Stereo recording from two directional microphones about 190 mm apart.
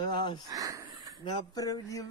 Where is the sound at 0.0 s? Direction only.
25° left (ahead or behind).